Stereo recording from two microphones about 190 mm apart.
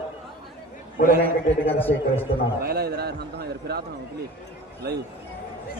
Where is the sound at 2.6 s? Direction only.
55° right (ahead or behind).